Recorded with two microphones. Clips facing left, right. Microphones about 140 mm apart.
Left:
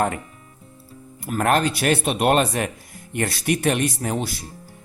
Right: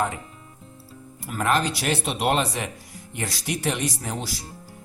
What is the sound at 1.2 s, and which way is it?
Speech, 55° left (ahead or behind).